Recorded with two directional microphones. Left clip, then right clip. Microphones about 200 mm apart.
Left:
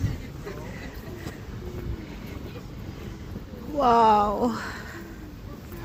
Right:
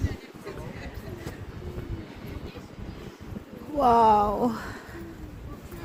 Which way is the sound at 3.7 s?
25° right (ahead or behind).